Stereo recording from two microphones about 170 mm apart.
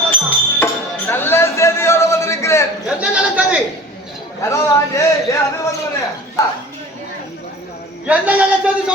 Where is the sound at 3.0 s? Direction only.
5° right (ahead or behind).